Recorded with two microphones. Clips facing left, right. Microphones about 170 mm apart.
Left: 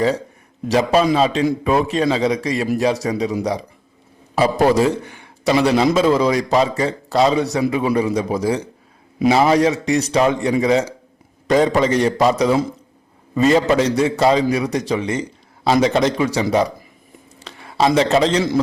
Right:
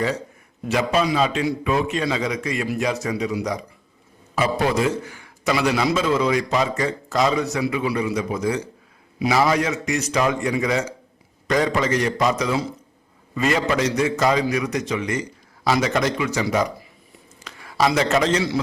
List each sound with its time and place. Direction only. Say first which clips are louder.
0.7 s a man's voice: left 5 dB; 35° left (ahead or behind)